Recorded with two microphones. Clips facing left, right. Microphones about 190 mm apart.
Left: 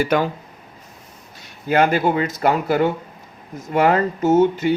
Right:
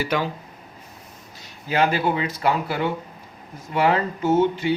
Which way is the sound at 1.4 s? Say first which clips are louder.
Left 4 dB; 55° left (ahead or behind).